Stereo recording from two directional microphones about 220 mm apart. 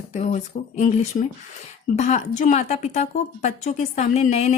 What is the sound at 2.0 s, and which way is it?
A woman's voice, 35° left (ahead or behind).